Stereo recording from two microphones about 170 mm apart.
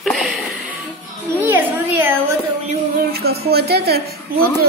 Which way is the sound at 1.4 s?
10° right (ahead or behind).